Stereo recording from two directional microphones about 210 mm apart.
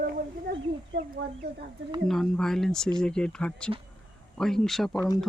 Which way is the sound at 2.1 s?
Centre (ahead or behind).